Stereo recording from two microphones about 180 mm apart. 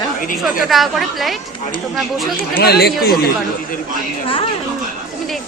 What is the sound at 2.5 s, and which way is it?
Speech, 60° left (ahead or behind).